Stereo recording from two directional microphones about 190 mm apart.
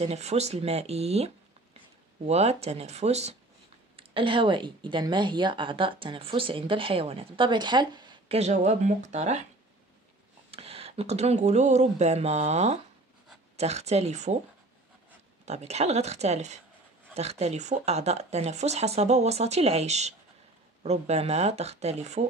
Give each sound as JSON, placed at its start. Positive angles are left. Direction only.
{"t": 0.0, "sound": "speech", "side_deg": -35}
{"t": 8.4, "sound": "speech", "side_deg": -35}
{"t": 10.5, "sound": "speech", "side_deg": -30}
{"t": 15.4, "sound": "speech", "side_deg": -35}